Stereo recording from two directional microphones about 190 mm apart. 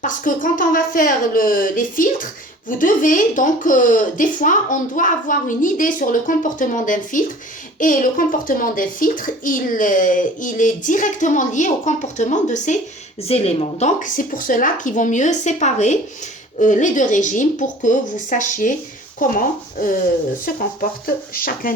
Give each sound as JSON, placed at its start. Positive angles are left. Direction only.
{"t": 0.0, "sound": "a child's voice", "side_deg": 45}
{"t": 21.3, "sound": "a child's voice", "side_deg": 50}